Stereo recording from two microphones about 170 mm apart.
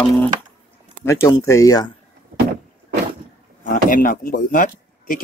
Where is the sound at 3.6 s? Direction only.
50° left (ahead or behind).